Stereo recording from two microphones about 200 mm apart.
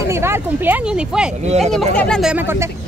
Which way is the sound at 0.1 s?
10° right (ahead or behind).